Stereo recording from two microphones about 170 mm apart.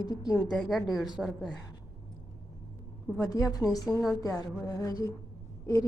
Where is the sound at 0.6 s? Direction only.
Centre (ahead or behind).